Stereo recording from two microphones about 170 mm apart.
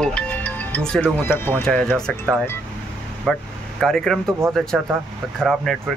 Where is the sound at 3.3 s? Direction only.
Centre (ahead or behind).